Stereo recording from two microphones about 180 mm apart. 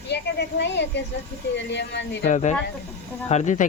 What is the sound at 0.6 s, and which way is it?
Speech, 75° left (ahead or behind).